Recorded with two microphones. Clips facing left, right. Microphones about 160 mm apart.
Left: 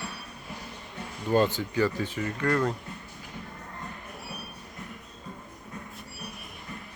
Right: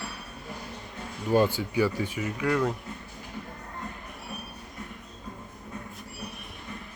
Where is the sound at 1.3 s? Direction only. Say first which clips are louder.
Right 1 dB; 10° right (ahead or behind).